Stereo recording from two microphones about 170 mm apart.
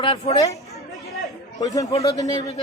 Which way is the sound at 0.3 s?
30° left (ahead or behind).